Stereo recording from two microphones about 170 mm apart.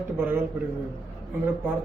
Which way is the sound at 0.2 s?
10° right (ahead or behind).